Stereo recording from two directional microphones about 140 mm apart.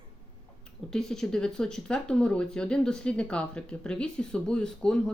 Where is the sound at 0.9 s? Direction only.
5° left (ahead or behind).